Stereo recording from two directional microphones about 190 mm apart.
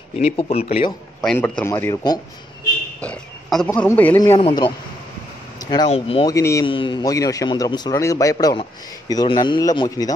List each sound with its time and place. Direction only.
0.2 s speech: 35° left (ahead or behind)
1.2 s speech: 10° left (ahead or behind)
3.0 s speech: 5° left (ahead or behind)
4.4 s a man's voice: 25° left (ahead or behind)
5.9 s speech: 30° left (ahead or behind)
6.2 s speech: 15° left (ahead or behind)
6.6 s a man's voice: 25° left (ahead or behind)